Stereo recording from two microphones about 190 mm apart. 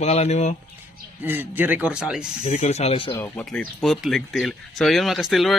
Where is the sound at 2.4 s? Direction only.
35° left (ahead or behind).